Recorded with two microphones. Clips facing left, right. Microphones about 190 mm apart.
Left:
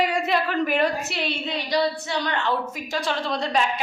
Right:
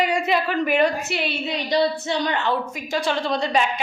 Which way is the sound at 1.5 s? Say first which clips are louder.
Right 3 dB; 20° right (ahead or behind).